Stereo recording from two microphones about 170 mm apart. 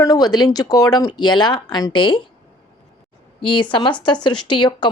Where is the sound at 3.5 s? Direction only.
30° left (ahead or behind).